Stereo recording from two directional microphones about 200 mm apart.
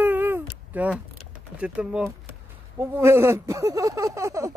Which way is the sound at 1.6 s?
5° right (ahead or behind).